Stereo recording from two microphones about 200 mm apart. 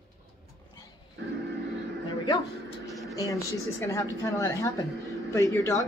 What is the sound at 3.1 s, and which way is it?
A woman's voice, 15° left (ahead or behind).